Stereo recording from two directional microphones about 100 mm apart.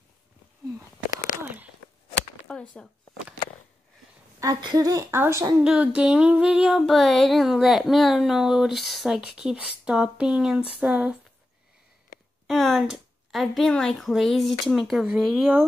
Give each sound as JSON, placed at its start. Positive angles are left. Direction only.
{"t": 2.5, "sound": "a sound", "side_deg": 10}
{"t": 4.6, "sound": "speech", "side_deg": -40}
{"t": 5.1, "sound": "speech", "side_deg": -25}
{"t": 5.6, "sound": "humming", "side_deg": -10}
{"t": 6.8, "sound": "a sound", "side_deg": 0}
{"t": 10.8, "sound": "humming", "side_deg": -10}
{"t": 12.4, "sound": "a woman's voice", "side_deg": 0}
{"t": 15.0, "sound": "humming", "side_deg": -5}